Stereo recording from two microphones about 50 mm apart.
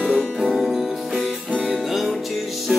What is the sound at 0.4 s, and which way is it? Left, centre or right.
Music, centre.